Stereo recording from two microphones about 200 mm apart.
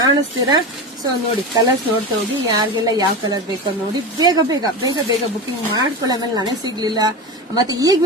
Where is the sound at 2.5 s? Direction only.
20° right (ahead or behind).